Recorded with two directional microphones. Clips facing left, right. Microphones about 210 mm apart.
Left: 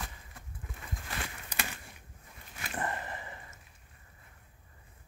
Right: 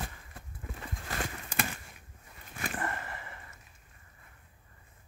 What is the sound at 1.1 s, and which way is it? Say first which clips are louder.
Horse: right 6 dB; 50° right (ahead or behind).